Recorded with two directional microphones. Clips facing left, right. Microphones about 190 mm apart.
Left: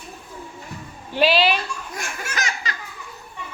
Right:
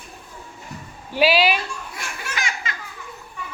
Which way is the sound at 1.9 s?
45° left (ahead or behind).